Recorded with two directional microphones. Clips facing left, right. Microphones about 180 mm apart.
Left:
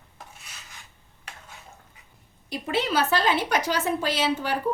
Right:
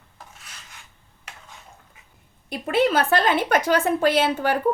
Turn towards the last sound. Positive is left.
turn(degrees=-55)  # may be behind; listen again after turning